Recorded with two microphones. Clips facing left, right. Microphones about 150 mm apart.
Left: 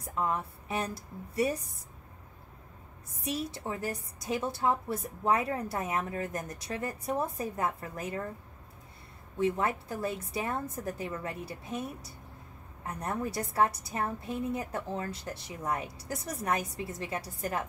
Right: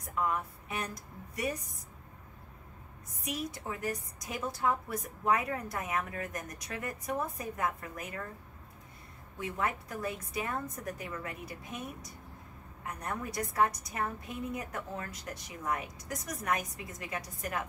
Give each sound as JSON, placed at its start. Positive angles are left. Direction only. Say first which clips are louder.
{"t": 0.1, "sound": "a woman's voice", "louder": "left 1 dB", "side_deg": 30}
{"t": 3.3, "sound": "a woman's voice", "louder": "left 3 dB", "side_deg": 30}
{"t": 9.4, "sound": "a woman's voice", "louder": "left 6 dB", "side_deg": 30}